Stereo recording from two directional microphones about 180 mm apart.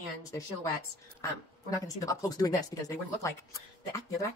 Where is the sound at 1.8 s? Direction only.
20° left (ahead or behind).